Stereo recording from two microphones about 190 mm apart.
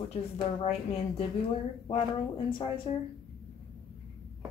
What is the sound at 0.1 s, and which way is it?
A woman's voice, 30° left (ahead or behind).